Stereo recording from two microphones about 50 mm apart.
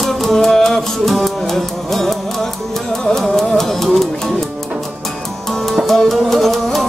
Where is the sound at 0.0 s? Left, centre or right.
Centre.